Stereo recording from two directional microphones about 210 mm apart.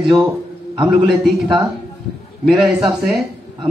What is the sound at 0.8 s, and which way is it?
Speech, centre (ahead or behind).